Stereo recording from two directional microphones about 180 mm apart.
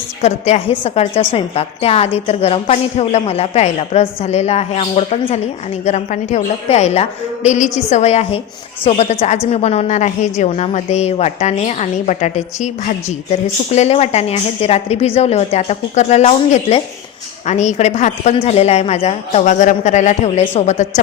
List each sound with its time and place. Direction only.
0.2 s a woman's voice: 40° left (ahead or behind)